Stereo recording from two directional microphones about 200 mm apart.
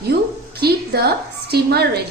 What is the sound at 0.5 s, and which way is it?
A woman's voice, 50° right (ahead or behind).